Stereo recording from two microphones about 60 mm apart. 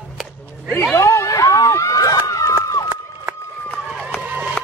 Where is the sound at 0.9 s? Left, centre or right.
Left.